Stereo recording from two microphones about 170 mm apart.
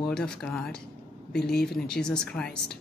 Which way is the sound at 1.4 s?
70° left (ahead or behind).